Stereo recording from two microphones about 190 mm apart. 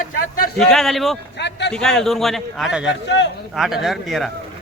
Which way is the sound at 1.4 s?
65° left (ahead or behind).